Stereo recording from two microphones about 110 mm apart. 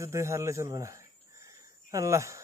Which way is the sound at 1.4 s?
30° right (ahead or behind).